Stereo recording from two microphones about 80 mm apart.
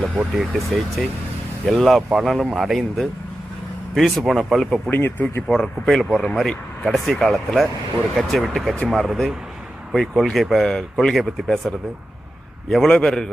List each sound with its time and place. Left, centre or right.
0.5 s speech: centre
4.9 s speech: left
5.5 s speech: centre
12.9 s a man's voice: centre